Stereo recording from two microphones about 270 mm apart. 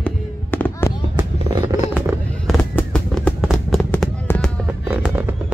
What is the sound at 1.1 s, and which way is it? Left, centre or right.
Fireworks, centre.